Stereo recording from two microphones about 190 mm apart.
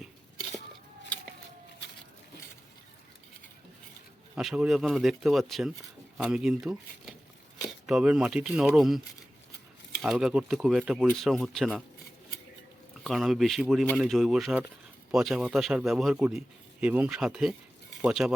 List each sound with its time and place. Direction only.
4.4 s speech: 5° right (ahead or behind)
10.0 s speech: centre (ahead or behind)
13.1 s speech: centre (ahead or behind)